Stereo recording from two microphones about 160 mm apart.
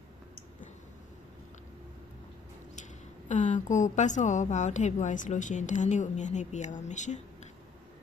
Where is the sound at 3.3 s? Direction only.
50° left (ahead or behind).